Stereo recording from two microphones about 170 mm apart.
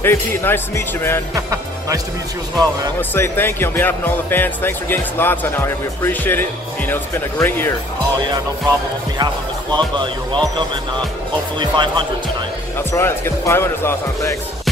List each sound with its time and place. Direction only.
0.0 s speech: 15° left (ahead or behind)
1.3 s music: 20° right (ahead or behind)
3.0 s speech: 10° left (ahead or behind)
9.2 s speech: 25° right (ahead or behind)
11.6 s speech: 30° right (ahead or behind)
12.7 s speech: 15° left (ahead or behind)